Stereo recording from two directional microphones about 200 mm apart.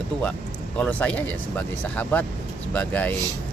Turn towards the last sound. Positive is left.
turn(degrees=10)  # may be behind; listen again after turning